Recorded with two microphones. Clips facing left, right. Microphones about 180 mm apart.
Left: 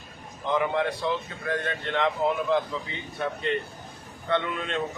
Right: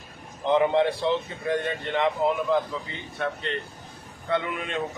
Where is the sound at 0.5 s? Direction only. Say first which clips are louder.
Right 5 dB; 25° right (ahead or behind); by 2.6 s 5° right (ahead or behind).